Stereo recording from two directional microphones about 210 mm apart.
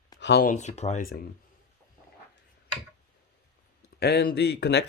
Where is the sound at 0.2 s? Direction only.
55° left (ahead or behind).